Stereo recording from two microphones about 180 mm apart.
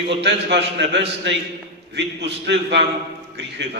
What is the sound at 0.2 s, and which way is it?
A man's voice, 75° right (ahead or behind).